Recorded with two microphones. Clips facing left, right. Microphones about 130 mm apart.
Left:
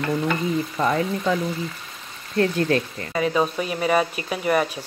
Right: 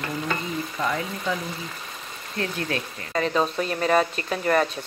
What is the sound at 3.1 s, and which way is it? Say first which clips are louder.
Speech: left 2 dB; 5° left (ahead or behind).